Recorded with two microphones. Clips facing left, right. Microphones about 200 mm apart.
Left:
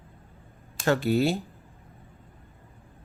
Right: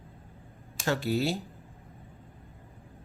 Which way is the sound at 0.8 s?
55° left (ahead or behind).